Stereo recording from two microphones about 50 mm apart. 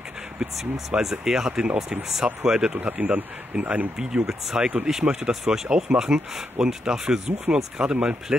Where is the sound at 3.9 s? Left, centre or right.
Centre.